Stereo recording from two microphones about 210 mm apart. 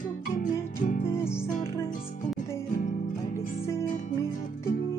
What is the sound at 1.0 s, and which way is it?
Music, 10° left (ahead or behind).